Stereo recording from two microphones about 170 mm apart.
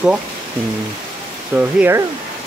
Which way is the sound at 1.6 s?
10° right (ahead or behind).